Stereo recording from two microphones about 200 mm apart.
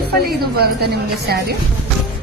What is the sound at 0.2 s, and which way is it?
Speech, 50° right (ahead or behind).